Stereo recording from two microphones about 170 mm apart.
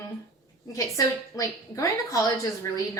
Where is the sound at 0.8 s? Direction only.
20° left (ahead or behind).